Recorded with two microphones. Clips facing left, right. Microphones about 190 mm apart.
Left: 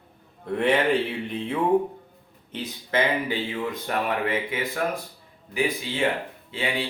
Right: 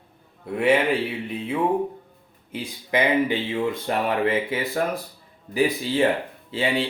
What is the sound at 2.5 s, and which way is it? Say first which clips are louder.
Speech: right 2 dB; 10° right (ahead or behind).